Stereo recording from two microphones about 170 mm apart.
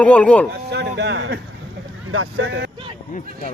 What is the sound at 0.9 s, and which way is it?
Speech, 90° right.